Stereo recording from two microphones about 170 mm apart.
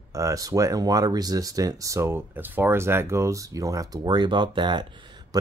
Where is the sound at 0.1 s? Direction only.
20° right (ahead or behind).